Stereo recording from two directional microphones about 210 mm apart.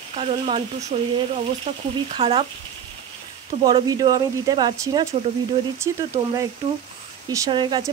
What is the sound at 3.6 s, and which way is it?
Speech, 20° right (ahead or behind).